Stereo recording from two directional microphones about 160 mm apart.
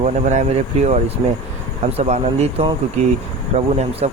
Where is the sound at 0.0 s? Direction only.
45° right (ahead or behind).